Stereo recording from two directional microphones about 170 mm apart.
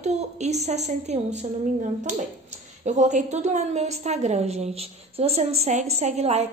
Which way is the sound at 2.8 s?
45° right (ahead or behind).